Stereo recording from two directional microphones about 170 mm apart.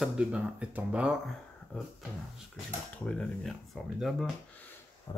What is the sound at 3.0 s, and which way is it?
Speech, 5° left (ahead or behind).